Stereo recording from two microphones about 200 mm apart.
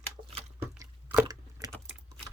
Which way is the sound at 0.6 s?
15° right (ahead or behind).